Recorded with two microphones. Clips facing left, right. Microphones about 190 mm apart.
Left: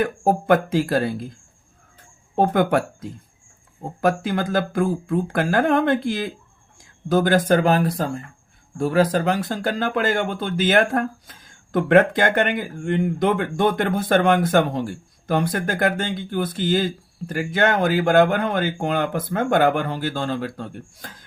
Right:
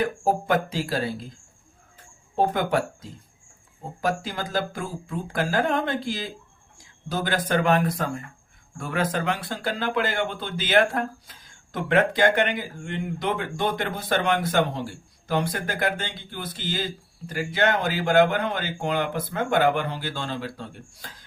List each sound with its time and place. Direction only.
0.0 s speech: 55° left (ahead or behind)
2.3 s a sound: 55° left (ahead or behind)
6.7 s speech: 50° left (ahead or behind)